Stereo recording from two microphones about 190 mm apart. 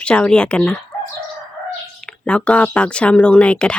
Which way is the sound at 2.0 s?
5° left (ahead or behind).